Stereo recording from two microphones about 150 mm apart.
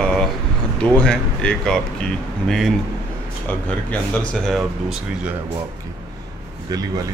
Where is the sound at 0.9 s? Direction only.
5° left (ahead or behind).